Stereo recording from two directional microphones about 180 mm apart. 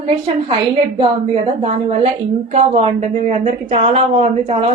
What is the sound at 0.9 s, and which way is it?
A woman's voice, 30° right (ahead or behind).